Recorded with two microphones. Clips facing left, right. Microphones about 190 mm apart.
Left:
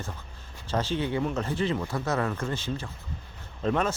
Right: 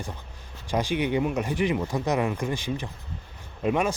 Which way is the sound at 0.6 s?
15° right (ahead or behind).